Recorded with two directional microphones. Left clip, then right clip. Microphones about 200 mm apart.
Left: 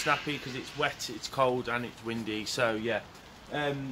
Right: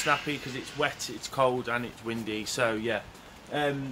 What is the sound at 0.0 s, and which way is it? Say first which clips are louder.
Speech: right 2 dB; centre (ahead or behind).